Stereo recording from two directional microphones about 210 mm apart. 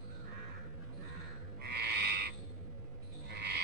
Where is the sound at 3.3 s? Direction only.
50° right (ahead or behind).